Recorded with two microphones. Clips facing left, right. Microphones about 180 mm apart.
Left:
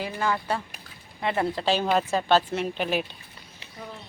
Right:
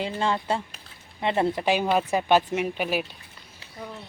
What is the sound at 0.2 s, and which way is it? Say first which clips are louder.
Speech: even; 25° right (ahead or behind).